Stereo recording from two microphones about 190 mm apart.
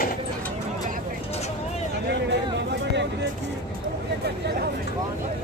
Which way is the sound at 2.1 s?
65° right (ahead or behind).